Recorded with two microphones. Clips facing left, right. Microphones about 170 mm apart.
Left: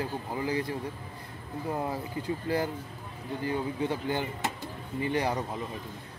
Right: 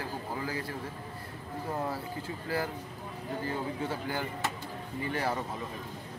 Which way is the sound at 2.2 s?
20° left (ahead or behind).